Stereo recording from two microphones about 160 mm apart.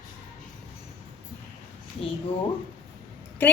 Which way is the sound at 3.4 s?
10° left (ahead or behind).